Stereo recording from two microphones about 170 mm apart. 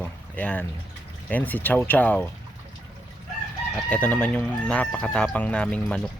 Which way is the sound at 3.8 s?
5° left (ahead or behind).